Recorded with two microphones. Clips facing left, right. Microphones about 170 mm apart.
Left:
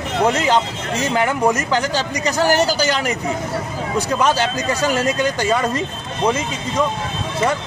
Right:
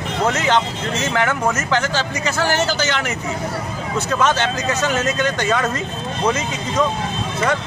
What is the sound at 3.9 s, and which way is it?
A man's voice, 10° left (ahead or behind).